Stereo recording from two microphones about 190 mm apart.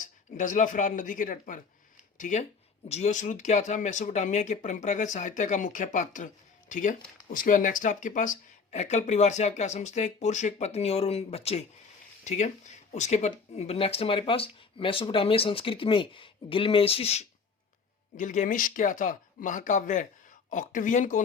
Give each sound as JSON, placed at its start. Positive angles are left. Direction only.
{"t": 0.0, "sound": "speech", "side_deg": 40}